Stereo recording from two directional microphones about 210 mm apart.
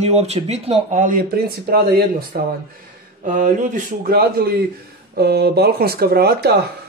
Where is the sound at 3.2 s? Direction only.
35° right (ahead or behind).